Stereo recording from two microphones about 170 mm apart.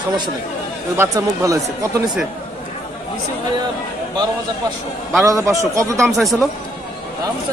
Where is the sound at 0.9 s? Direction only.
20° right (ahead or behind).